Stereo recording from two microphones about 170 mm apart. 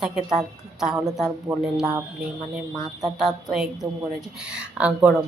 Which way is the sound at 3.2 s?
Centre (ahead or behind).